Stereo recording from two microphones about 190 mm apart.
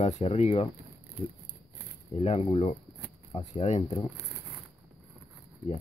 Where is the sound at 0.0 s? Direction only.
35° left (ahead or behind).